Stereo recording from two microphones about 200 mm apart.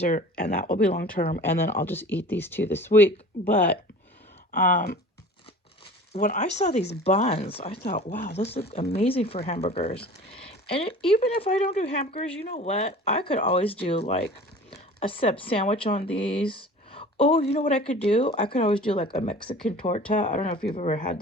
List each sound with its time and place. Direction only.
0.0 s speech: 40° left (ahead or behind)
1.4 s speech: 10° left (ahead or behind)
4.5 s speech: 45° left (ahead or behind)
6.1 s speech: 40° left (ahead or behind)